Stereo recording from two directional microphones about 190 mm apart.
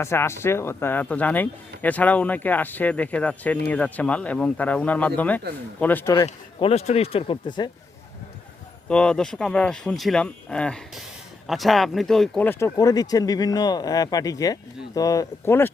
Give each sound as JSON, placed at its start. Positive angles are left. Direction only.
{"t": 0.0, "sound": "speech", "side_deg": 15}
{"t": 6.2, "sound": "speech", "side_deg": 30}
{"t": 8.9, "sound": "speech", "side_deg": 5}